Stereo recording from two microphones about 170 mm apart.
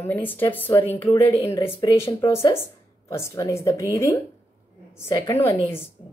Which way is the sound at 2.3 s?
15° left (ahead or behind).